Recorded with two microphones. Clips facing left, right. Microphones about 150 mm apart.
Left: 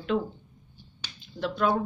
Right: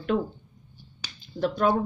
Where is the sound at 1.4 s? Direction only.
45° right (ahead or behind).